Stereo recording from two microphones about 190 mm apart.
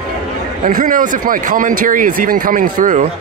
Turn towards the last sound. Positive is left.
turn(degrees=-45)  # may be behind; listen again after turning